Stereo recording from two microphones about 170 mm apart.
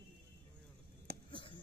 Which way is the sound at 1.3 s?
30° left (ahead or behind).